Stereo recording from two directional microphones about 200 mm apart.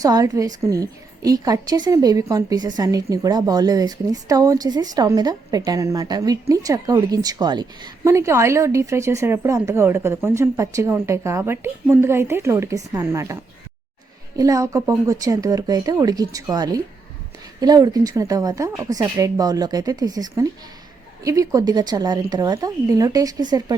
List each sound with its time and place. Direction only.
0.0 s a woman's voice: 15° right (ahead or behind)